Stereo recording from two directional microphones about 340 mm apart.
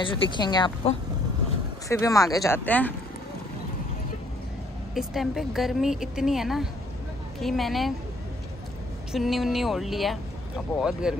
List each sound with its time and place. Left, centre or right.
0.0 s speech: centre
4.9 s a woman's voice: centre
9.1 s a woman's voice: centre